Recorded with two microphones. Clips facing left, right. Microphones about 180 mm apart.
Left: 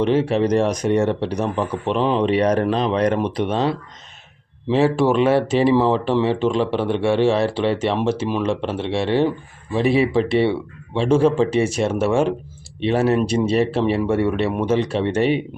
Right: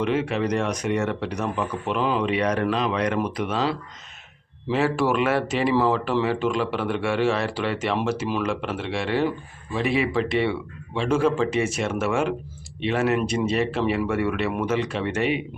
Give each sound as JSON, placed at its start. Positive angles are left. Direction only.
{"t": 0.0, "sound": "speech", "side_deg": 30}